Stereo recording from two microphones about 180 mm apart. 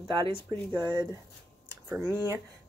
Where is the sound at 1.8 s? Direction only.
10° right (ahead or behind).